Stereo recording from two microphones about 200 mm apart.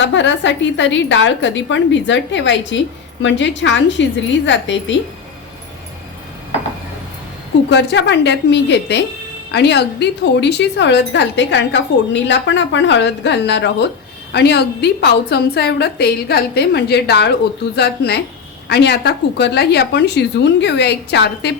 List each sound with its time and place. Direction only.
0.0 s speech: 65° left (ahead or behind)
7.7 s speech: 60° left (ahead or behind)